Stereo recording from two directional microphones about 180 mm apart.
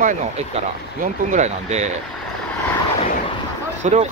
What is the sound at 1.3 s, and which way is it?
Speech, 40° right (ahead or behind).